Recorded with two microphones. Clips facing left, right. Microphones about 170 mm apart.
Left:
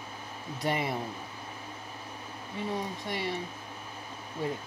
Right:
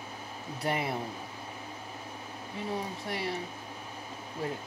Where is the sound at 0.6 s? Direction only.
Centre (ahead or behind).